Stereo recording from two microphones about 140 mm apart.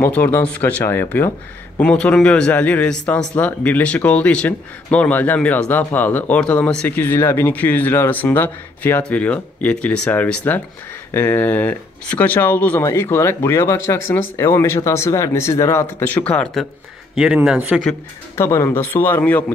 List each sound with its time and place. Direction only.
0.0 s speech: 15° left (ahead or behind)
17.1 s a man's voice: 5° right (ahead or behind)
18.3 s speech: 20° left (ahead or behind)